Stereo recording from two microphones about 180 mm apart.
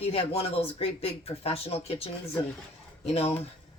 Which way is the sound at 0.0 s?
35° left (ahead or behind).